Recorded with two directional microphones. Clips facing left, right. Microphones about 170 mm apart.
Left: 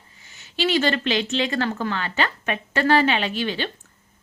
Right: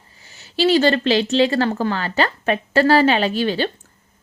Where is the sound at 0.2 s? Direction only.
35° right (ahead or behind).